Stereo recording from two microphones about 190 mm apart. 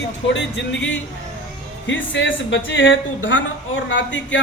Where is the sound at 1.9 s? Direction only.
75° left (ahead or behind).